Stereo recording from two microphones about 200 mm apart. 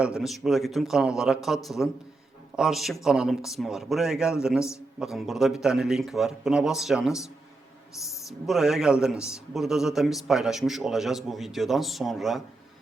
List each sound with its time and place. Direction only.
0.0 s a man's voice: centre (ahead or behind)
8.4 s a man's voice: centre (ahead or behind)